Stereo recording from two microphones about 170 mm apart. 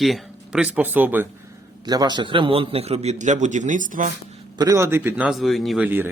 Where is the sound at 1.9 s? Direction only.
25° right (ahead or behind); by 4.1 s 50° right (ahead or behind).